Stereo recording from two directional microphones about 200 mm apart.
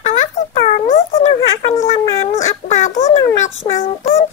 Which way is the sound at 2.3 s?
35° left (ahead or behind).